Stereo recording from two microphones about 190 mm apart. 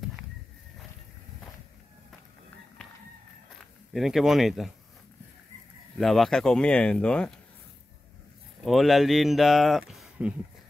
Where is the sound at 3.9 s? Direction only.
Centre (ahead or behind).